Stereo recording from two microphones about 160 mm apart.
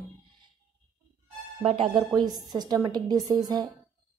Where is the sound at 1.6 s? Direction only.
35° right (ahead or behind).